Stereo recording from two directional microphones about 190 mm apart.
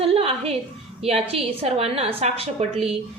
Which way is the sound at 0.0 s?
30° right (ahead or behind).